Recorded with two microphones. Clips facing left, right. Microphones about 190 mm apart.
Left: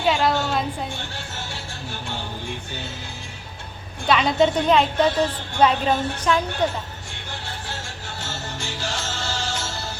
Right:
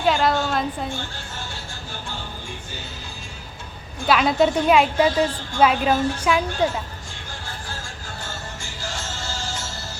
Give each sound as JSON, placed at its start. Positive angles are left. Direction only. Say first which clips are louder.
{"t": 0.0, "sound": "a woman's voice", "louder": "right 1 dB", "side_deg": 0}
{"t": 1.1, "sound": "music", "louder": "left 1 dB", "side_deg": 70}
{"t": 4.0, "sound": "a woman's voice", "louder": "even", "side_deg": -5}
{"t": 7.3, "sound": "music", "louder": "left 2 dB", "side_deg": 70}